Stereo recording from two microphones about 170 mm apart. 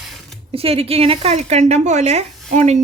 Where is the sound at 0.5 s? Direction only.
35° right (ahead or behind).